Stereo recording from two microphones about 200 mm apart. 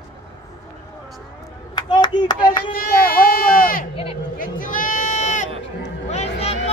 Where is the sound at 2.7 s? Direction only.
45° left (ahead or behind).